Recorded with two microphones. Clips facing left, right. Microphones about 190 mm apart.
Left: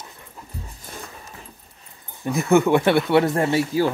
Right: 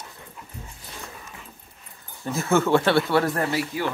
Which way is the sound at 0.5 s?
35° left (ahead or behind).